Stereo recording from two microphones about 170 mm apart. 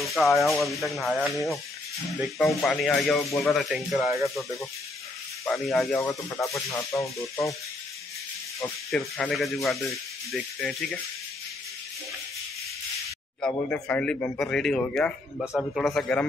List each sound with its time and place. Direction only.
0.0 s music: centre (ahead or behind)
5.9 s speech: 20° left (ahead or behind)
8.9 s music: 5° left (ahead or behind)
13.5 s speech: 10° left (ahead or behind)
15.5 s music: centre (ahead or behind)